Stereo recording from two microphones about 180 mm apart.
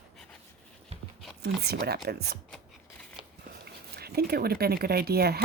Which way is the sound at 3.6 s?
60° right (ahead or behind).